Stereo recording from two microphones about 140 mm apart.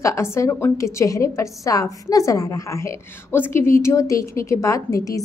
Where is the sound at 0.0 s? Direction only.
20° left (ahead or behind).